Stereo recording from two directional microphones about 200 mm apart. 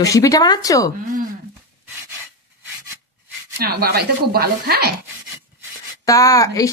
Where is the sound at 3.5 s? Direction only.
50° right (ahead or behind).